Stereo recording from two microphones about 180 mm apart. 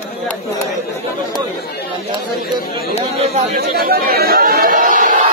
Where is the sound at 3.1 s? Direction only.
35° right (ahead or behind).